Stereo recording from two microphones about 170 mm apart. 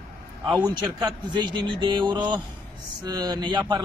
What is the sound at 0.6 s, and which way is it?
Speech, 25° right (ahead or behind).